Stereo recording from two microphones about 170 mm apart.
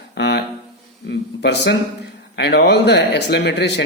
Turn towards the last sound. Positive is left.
turn(degrees=90)